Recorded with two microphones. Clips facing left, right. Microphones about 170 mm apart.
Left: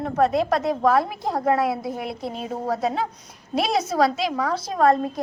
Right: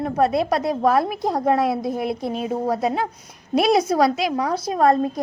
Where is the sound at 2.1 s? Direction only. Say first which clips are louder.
Right 5 dB; 15° right (ahead or behind).